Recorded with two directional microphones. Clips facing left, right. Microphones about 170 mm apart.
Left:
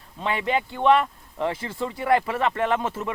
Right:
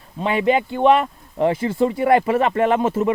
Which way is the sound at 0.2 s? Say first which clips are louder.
Right 7 dB; 15° right (ahead or behind).